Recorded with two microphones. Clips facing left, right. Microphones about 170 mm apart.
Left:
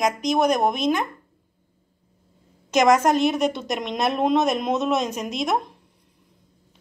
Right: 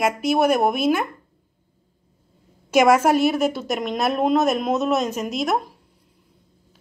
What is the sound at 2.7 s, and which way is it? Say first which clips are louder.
A woman's voice: right 2 dB; 10° right (ahead or behind).